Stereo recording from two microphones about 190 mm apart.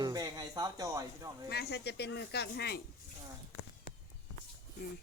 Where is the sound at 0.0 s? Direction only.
20° right (ahead or behind).